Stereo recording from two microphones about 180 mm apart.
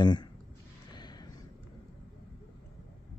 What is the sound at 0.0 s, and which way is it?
Speech, 25° left (ahead or behind).